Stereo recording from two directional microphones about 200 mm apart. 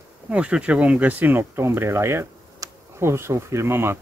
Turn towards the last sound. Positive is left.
turn(degrees=-10)  # may be behind; listen again after turning